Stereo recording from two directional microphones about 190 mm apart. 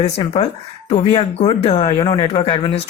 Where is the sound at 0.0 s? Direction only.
30° left (ahead or behind).